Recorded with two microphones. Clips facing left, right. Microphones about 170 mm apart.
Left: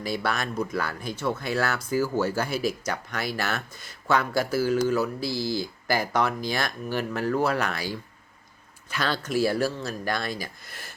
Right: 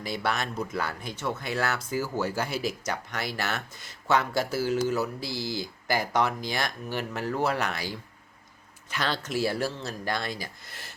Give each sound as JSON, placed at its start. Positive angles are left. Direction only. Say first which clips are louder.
{"t": 0.0, "sound": "speech", "louder": "left 2 dB", "side_deg": -20}
{"t": 8.9, "sound": "speech", "louder": "left 3 dB", "side_deg": -20}